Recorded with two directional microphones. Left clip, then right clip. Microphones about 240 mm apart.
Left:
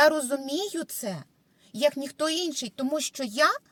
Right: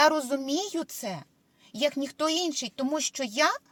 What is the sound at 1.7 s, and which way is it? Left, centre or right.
A woman's voice, centre.